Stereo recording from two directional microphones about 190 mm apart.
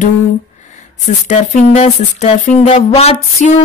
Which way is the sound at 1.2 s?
35° left (ahead or behind).